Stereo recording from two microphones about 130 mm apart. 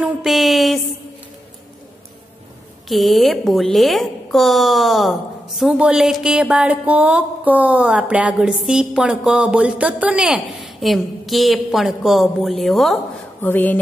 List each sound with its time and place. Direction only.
0.0 s music: centre (ahead or behind)
2.9 s music: centre (ahead or behind)
13.4 s speech: 15° left (ahead or behind)